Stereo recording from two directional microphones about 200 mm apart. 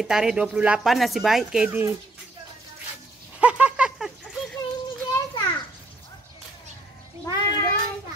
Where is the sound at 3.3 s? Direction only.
5° right (ahead or behind).